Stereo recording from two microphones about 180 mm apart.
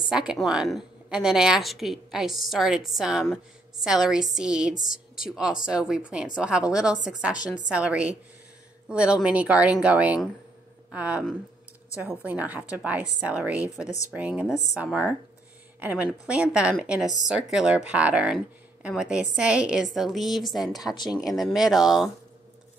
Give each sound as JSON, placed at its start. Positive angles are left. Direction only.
{"t": 0.1, "sound": "speech", "side_deg": -5}
{"t": 12.3, "sound": "speech", "side_deg": -10}
{"t": 20.9, "sound": "speech", "side_deg": 25}
{"t": 21.3, "sound": "speech", "side_deg": 0}